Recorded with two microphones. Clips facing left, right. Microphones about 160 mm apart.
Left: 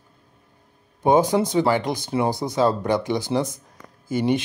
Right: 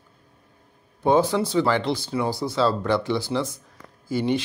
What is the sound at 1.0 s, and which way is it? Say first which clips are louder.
Speech: left 2 dB; 15° left (ahead or behind).